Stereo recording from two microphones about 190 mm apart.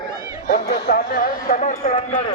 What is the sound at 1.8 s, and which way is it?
Speech, 35° left (ahead or behind).